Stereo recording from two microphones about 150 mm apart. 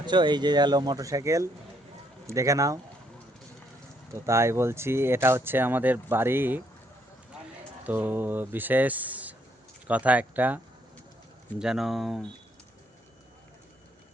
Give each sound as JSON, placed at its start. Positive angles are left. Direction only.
{"t": 0.0, "sound": "speech", "side_deg": -30}
{"t": 4.1, "sound": "speech", "side_deg": -20}
{"t": 7.9, "sound": "speech", "side_deg": -10}
{"t": 11.6, "sound": "speech", "side_deg": 0}